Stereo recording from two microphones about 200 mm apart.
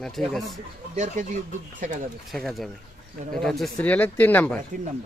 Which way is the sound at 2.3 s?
Centre (ahead or behind).